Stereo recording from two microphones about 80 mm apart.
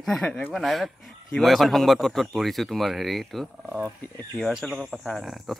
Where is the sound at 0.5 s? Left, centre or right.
Centre.